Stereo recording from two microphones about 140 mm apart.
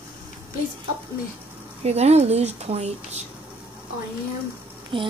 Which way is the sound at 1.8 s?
50° right (ahead or behind).